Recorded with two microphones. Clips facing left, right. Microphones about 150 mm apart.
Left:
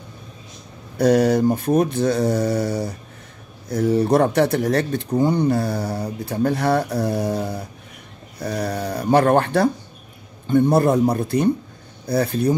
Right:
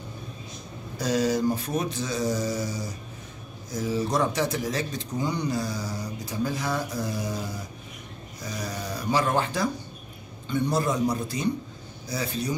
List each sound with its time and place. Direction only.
0.9 s speech: 60° left (ahead or behind)
10.4 s speech: 50° left (ahead or behind)